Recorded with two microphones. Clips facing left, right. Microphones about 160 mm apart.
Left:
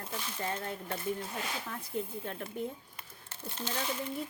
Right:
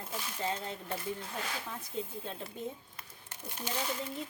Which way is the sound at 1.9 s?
15° left (ahead or behind).